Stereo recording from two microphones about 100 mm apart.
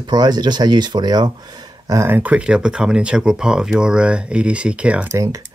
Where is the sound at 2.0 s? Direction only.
15° right (ahead or behind).